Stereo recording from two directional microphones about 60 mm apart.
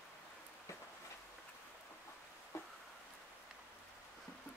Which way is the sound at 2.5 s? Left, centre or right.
Left.